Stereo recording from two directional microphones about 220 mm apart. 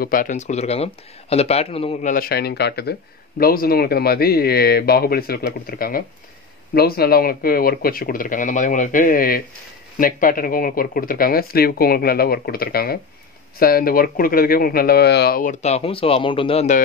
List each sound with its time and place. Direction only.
0.0 s speech: 40° left (ahead or behind)